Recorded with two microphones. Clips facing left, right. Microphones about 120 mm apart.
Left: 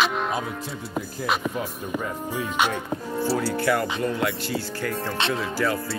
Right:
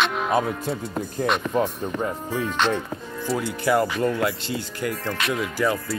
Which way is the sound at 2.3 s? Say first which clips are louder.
Left 1 dB; 15° left (ahead or behind).